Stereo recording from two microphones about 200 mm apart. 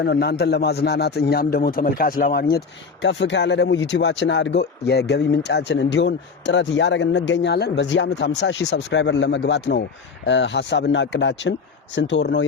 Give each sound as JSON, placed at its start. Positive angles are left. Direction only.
{"t": 0.0, "sound": "a man's voice", "side_deg": 55}